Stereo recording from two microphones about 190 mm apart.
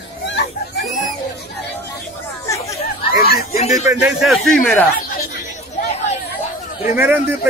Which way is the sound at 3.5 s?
35° left (ahead or behind).